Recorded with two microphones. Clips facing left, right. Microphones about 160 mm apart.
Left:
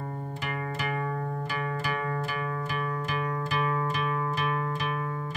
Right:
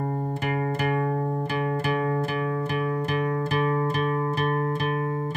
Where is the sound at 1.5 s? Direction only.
50° right (ahead or behind).